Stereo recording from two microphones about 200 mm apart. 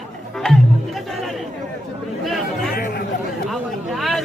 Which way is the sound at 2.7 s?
50° left (ahead or behind).